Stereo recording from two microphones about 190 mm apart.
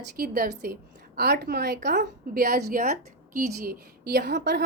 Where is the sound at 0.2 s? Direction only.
50° right (ahead or behind).